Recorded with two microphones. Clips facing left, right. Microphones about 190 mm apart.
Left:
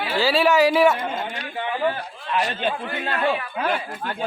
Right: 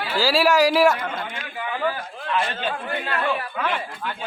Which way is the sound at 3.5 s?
40° left (ahead or behind).